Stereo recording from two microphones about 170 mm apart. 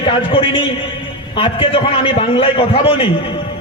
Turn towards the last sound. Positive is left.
turn(degrees=30)  # may be behind; listen again after turning